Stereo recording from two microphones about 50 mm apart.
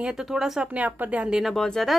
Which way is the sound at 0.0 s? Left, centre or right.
Centre.